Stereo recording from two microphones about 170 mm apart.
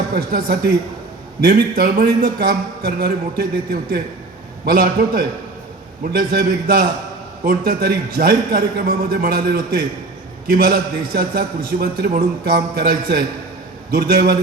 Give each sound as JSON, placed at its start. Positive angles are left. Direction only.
{"t": 0.1, "sound": "a man's voice", "side_deg": -60}